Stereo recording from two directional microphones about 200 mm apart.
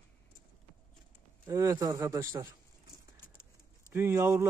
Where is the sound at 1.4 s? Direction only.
15° right (ahead or behind).